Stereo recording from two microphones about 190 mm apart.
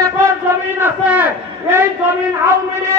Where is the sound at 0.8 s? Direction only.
10° right (ahead or behind).